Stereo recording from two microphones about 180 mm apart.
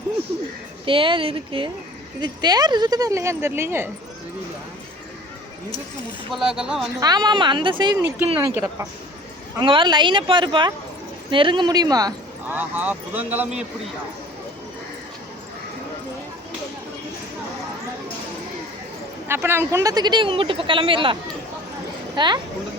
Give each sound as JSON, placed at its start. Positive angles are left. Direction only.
{"t": 0.9, "sound": "speech", "side_deg": -30}
{"t": 6.3, "sound": "speech", "side_deg": -5}
{"t": 7.0, "sound": "speech", "side_deg": -20}
{"t": 8.4, "sound": "speech", "side_deg": -15}
{"t": 9.6, "sound": "speech", "side_deg": -25}
{"t": 12.5, "sound": "speech", "side_deg": -10}
{"t": 19.3, "sound": "speech", "side_deg": -15}